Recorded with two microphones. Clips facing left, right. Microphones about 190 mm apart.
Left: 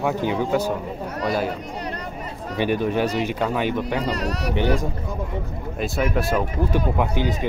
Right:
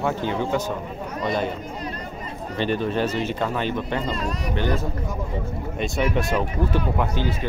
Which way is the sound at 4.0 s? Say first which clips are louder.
Left 2 dB; 75° left (ahead or behind).